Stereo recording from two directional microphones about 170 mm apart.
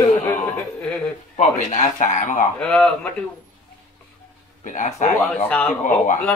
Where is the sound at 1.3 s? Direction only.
45° left (ahead or behind).